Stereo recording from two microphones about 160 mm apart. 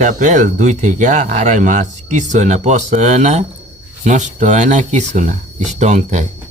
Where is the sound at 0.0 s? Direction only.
50° right (ahead or behind).